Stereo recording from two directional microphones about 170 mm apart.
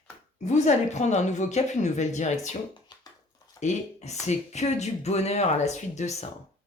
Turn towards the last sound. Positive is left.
turn(degrees=40)  # may be behind; listen again after turning